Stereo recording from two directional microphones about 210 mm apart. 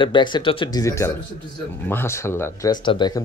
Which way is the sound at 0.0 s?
20° left (ahead or behind).